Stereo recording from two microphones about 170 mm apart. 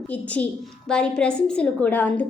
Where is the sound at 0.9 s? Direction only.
5° left (ahead or behind).